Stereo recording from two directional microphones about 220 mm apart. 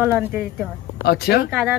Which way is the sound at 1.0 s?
45° left (ahead or behind).